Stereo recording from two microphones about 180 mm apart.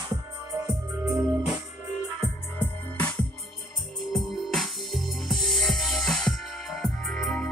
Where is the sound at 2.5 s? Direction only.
10° left (ahead or behind).